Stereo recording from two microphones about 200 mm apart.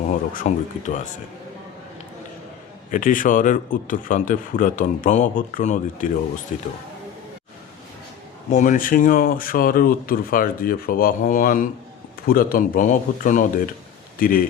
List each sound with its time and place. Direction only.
0.3 s speech: 35° left (ahead or behind)
2.9 s speech: 40° left (ahead or behind)
8.4 s speech: 40° left (ahead or behind)